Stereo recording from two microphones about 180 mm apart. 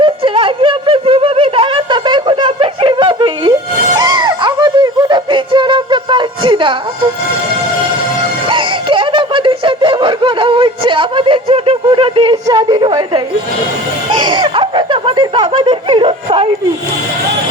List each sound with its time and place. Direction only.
0.0 s a sound: 30° right (ahead or behind)
3.9 s music: 25° right (ahead or behind)
8.4 s music: 30° right (ahead or behind)
14.1 s snicker: 25° right (ahead or behind)